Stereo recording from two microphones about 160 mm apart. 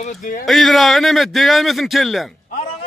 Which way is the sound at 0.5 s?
Centre (ahead or behind).